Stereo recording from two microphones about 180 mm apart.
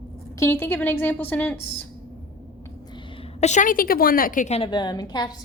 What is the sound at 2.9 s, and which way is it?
A woman's voice, 35° left (ahead or behind).